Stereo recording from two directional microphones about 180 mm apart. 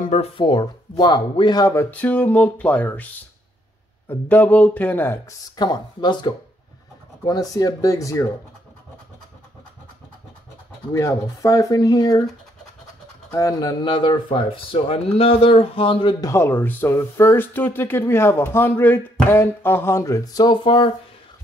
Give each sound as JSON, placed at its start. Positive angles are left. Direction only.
{"t": 0.0, "sound": "speech", "side_deg": 40}
{"t": 0.4, "sound": "speech", "side_deg": 25}
{"t": 5.6, "sound": "speech", "side_deg": 25}
{"t": 10.9, "sound": "speech", "side_deg": 20}
{"t": 13.3, "sound": "speech", "side_deg": 20}